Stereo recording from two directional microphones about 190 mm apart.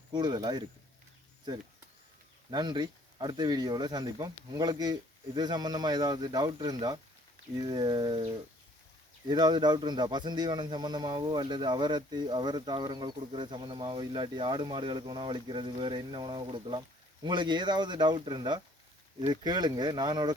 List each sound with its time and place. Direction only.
0.1 s speech: 20° right (ahead or behind)
2.5 s speech: 20° right (ahead or behind)